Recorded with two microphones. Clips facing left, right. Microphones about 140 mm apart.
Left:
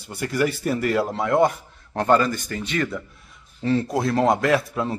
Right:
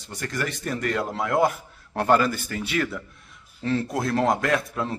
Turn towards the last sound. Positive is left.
turn(degrees=0)  # may be behind; listen again after turning